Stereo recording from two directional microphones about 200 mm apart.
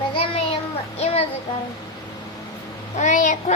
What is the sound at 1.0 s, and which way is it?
Speech, 30° left (ahead or behind).